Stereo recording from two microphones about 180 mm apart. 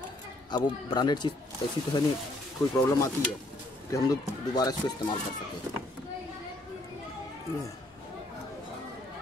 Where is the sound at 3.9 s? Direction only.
20° left (ahead or behind).